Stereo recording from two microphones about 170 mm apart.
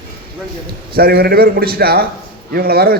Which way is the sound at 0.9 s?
65° right (ahead or behind).